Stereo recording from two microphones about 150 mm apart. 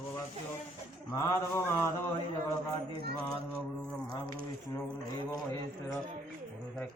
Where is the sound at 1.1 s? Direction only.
20° left (ahead or behind).